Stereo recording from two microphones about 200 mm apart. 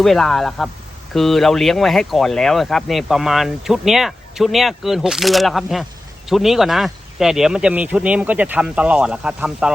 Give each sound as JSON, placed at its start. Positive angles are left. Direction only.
{"t": 0.0, "sound": "speech", "side_deg": 0}